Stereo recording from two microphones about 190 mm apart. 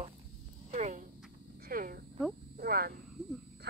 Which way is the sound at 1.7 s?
50° right (ahead or behind).